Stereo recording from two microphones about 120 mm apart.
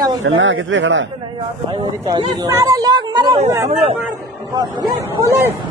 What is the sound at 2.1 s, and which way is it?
A man's voice, 30° right (ahead or behind).